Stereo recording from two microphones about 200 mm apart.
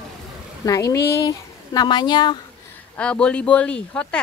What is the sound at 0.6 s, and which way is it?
Speech, 15° left (ahead or behind).